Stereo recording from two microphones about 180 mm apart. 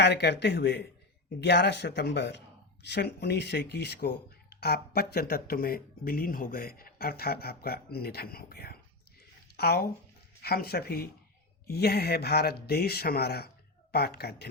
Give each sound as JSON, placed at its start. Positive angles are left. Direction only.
{"t": 0.0, "sound": "speech", "side_deg": 70}